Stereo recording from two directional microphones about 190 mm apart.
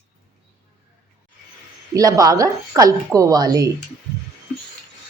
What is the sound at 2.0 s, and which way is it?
A woman's voice, 20° right (ahead or behind).